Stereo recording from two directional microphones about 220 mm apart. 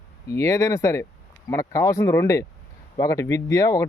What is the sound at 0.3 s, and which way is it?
Speech, 15° left (ahead or behind).